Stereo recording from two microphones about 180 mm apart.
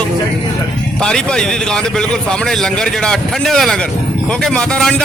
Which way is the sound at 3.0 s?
Centre (ahead or behind).